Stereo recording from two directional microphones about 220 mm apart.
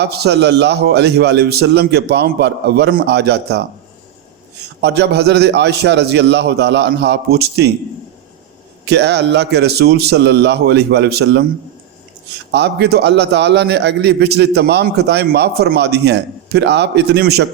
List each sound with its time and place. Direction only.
0.0 s a man's voice: 50° right (ahead or behind)
4.8 s a man's voice: 50° right (ahead or behind)
8.8 s a man's voice: 50° right (ahead or behind)
12.5 s a man's voice: 50° right (ahead or behind)